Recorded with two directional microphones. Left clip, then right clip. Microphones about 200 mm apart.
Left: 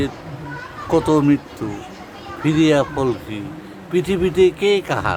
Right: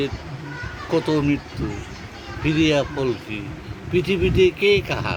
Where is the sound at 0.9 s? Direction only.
20° left (ahead or behind).